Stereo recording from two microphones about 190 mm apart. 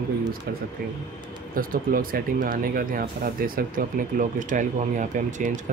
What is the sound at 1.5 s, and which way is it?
Speech, 50° right (ahead or behind).